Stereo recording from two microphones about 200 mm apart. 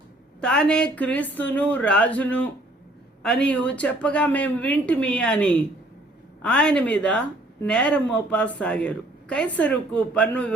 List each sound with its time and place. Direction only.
0.4 s a woman's voice: 5° left (ahead or behind)